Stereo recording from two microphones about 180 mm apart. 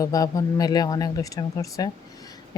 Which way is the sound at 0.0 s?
20° left (ahead or behind).